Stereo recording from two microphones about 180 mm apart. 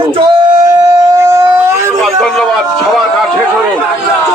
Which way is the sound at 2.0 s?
Centre (ahead or behind).